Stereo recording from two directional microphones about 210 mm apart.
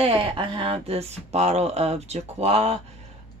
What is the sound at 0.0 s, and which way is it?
Speech, 25° right (ahead or behind).